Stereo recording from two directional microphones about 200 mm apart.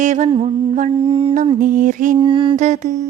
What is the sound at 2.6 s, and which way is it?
Mantra, 35° right (ahead or behind).